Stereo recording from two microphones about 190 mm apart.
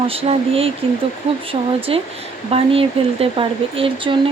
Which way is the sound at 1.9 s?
30° right (ahead or behind).